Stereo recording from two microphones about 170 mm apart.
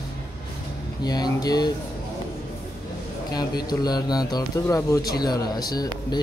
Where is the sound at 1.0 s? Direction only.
25° left (ahead or behind).